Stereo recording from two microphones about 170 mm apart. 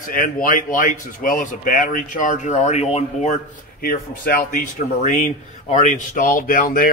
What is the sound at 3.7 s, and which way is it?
Speech, 60° left (ahead or behind).